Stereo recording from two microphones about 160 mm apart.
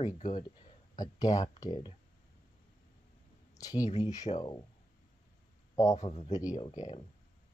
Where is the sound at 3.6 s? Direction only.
20° left (ahead or behind).